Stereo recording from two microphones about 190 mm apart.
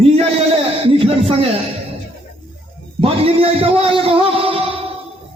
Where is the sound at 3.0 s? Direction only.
30° right (ahead or behind).